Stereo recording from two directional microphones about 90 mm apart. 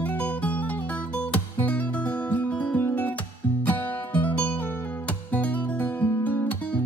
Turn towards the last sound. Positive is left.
turn(degrees=20)  # may be behind; listen again after turning